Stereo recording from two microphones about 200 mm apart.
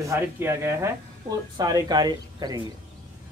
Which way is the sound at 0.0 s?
15° right (ahead or behind).